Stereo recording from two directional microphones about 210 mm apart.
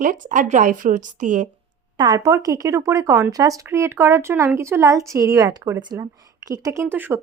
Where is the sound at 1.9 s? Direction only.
20° right (ahead or behind).